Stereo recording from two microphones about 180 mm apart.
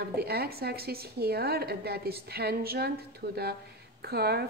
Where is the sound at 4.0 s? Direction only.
60° right (ahead or behind).